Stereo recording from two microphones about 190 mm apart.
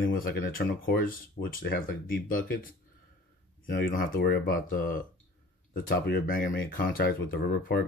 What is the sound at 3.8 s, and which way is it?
Speech, 45° left (ahead or behind).